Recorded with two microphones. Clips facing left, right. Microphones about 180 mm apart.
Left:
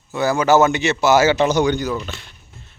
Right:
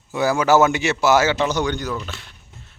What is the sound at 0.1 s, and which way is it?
Speech, 10° right (ahead or behind).